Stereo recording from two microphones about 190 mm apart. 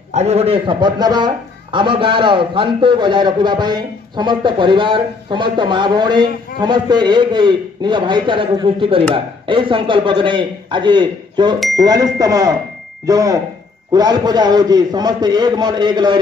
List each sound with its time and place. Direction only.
0.1 s a man's voice: 35° right (ahead or behind)